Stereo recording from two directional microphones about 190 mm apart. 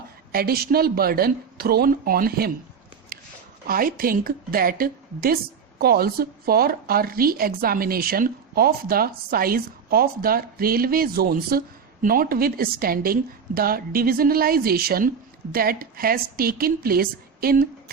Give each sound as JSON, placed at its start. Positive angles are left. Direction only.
{"t": 0.3, "sound": "a woman's voice", "side_deg": -50}
{"t": 3.1, "sound": "a sound", "side_deg": -50}
{"t": 3.7, "sound": "a woman's voice", "side_deg": -50}